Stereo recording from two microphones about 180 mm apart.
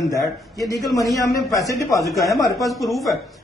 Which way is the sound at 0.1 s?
20° left (ahead or behind).